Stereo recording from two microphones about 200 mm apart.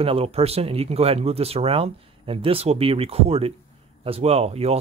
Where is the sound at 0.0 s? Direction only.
30° right (ahead or behind).